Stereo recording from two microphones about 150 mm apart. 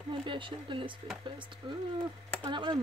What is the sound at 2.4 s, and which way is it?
Speech, 35° right (ahead or behind).